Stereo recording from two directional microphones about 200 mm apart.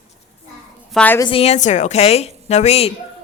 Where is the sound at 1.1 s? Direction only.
25° left (ahead or behind).